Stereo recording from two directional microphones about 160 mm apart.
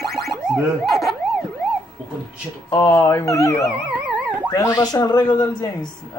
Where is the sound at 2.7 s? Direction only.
20° left (ahead or behind).